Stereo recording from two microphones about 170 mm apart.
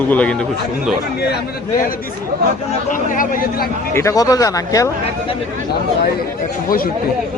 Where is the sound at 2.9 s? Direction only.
50° left (ahead or behind).